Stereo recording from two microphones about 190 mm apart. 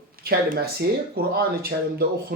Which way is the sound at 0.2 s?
50° right (ahead or behind).